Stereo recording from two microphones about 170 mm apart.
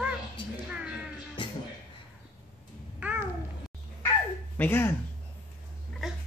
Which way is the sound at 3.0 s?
10° right (ahead or behind).